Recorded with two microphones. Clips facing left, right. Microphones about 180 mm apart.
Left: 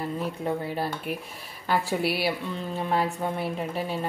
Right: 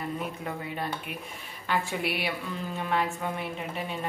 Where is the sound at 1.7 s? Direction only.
35° left (ahead or behind).